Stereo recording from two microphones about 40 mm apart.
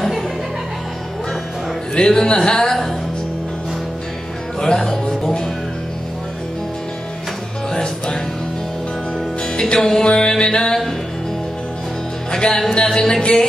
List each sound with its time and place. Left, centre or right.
2.0 s speech: left
4.6 s music: centre
7.7 s music: centre
9.8 s speech: centre
10.0 s music: centre
12.3 s music: centre
12.8 s speech: centre
13.2 s music: left